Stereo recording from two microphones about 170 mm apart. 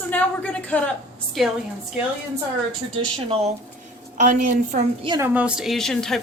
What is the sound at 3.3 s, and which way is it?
A woman's voice, 40° right (ahead or behind).